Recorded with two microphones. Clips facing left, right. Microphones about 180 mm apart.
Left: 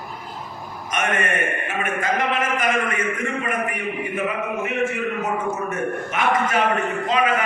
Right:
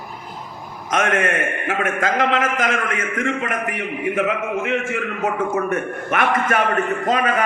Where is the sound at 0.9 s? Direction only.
90° right.